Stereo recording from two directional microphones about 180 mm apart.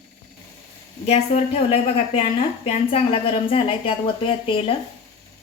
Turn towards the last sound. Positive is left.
turn(degrees=30)  # may be behind; listen again after turning